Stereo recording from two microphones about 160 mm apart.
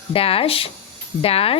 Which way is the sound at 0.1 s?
35° left (ahead or behind).